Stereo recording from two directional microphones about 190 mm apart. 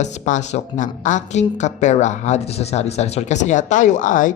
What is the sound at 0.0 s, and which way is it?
A woman's voice, 40° left (ahead or behind).